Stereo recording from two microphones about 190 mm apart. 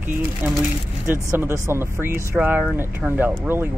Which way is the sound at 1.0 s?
10° right (ahead or behind).